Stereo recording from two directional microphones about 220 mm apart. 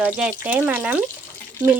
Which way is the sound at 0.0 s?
5° right (ahead or behind).